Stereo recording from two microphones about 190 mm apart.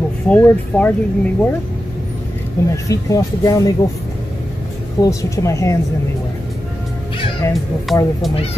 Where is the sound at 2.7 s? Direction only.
15° left (ahead or behind).